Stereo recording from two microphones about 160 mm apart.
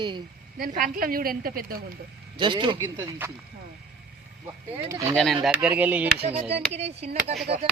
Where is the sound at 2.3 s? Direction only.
30° right (ahead or behind).